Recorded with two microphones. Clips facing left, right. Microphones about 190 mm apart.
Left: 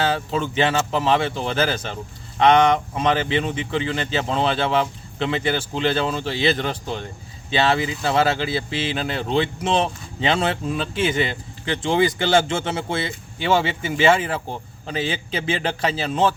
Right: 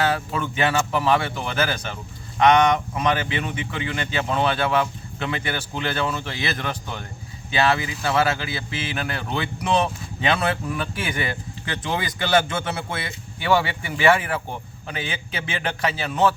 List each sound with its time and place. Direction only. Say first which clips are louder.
0.0 s speech: left 1 dB; 25° left (ahead or behind)